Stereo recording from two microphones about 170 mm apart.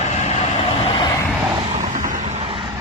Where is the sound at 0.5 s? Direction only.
30° left (ahead or behind).